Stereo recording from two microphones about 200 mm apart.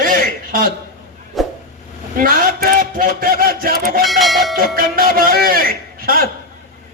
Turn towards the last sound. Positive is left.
turn(degrees=-45)  # may be behind; listen again after turning